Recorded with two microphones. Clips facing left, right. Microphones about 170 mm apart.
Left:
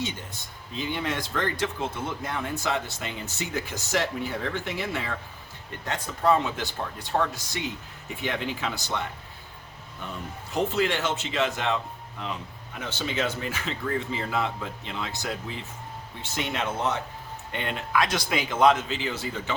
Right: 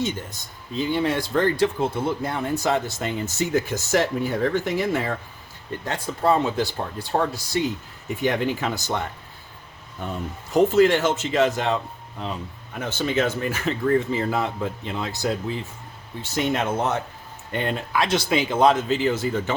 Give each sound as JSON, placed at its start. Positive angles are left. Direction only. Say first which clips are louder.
{"t": 0.0, "sound": "speech", "louder": "right 6 dB", "side_deg": -40}
{"t": 10.5, "sound": "speech", "louder": "right 9 dB", "side_deg": -40}
{"t": 12.8, "sound": "speech", "louder": "right 6 dB", "side_deg": -50}
{"t": 18.0, "sound": "speech", "louder": "right 5 dB", "side_deg": -25}